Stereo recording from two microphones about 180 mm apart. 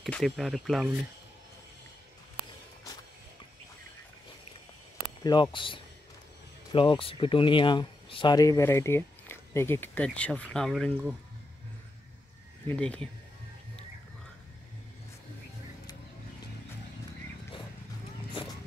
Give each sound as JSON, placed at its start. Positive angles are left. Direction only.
{"t": 0.0, "sound": "speech", "side_deg": 0}
{"t": 5.2, "sound": "speech", "side_deg": 25}
{"t": 12.6, "sound": "speech", "side_deg": 5}